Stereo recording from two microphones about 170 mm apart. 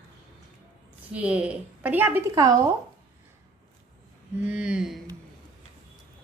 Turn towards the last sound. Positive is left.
turn(degrees=-5)  # may be behind; listen again after turning